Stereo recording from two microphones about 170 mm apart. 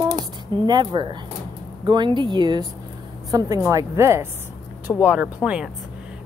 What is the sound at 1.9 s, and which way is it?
A woman's voice, 25° right (ahead or behind).